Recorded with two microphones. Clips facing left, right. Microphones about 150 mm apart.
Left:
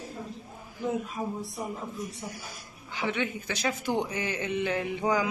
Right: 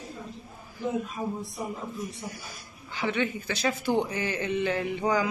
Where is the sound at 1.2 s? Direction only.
Centre (ahead or behind).